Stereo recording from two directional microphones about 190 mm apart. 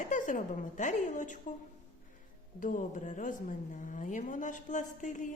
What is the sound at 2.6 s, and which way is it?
A woman's voice, 40° left (ahead or behind).